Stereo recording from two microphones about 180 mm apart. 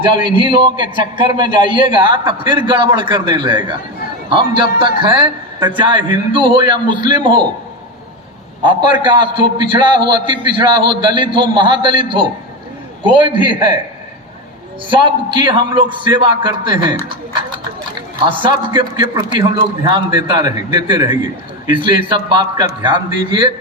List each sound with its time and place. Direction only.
0.0 s a man's voice: 25° right (ahead or behind)
8.6 s a man's voice: 25° right (ahead or behind)
14.8 s a man's voice: 25° right (ahead or behind)
18.3 s a man's voice: 30° right (ahead or behind)